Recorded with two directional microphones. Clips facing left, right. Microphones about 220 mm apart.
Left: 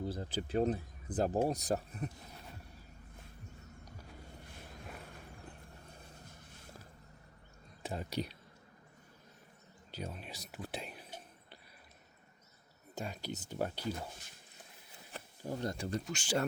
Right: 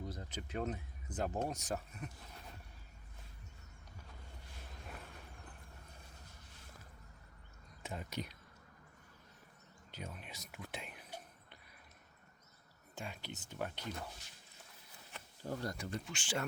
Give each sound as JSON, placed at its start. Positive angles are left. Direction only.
{"t": 0.0, "sound": "speech", "side_deg": 30}
{"t": 7.8, "sound": "speech", "side_deg": 35}
{"t": 9.9, "sound": "speech", "side_deg": 35}
{"t": 13.0, "sound": "speech", "side_deg": 40}
{"t": 15.1, "sound": "bee", "side_deg": 35}
{"t": 15.5, "sound": "speech", "side_deg": 25}
{"t": 15.9, "sound": "speech", "side_deg": 40}